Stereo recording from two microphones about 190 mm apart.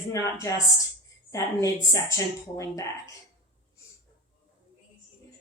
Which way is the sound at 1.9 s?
15° left (ahead or behind).